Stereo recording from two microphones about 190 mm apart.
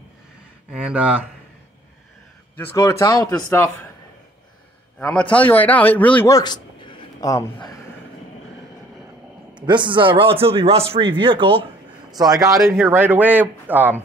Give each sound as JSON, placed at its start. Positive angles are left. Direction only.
{"t": 0.7, "sound": "speech", "side_deg": -5}
{"t": 2.5, "sound": "speech", "side_deg": 15}
{"t": 4.9, "sound": "a man's voice", "side_deg": 5}
{"t": 6.3, "sound": "a sound", "side_deg": 20}
{"t": 9.5, "sound": "speech", "side_deg": -25}